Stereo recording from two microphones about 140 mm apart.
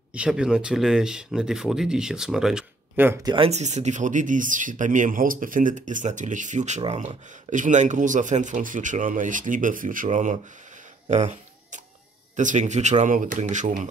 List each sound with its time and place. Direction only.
0.1 s speech: 5° right (ahead or behind)
3.2 s speech: 30° right (ahead or behind)
3.4 s speech: 55° right (ahead or behind); by 10.0 s 75° right (ahead or behind)
10.0 s speech: 55° right (ahead or behind)
11.1 s cat: 55° right (ahead or behind)
12.4 s speech: 60° right (ahead or behind)